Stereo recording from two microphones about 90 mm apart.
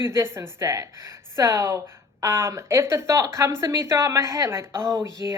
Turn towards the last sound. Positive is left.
turn(degrees=-35)  # may be behind; listen again after turning